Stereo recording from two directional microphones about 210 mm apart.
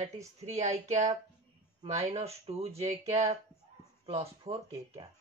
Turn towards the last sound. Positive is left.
turn(degrees=-30)  # may be behind; listen again after turning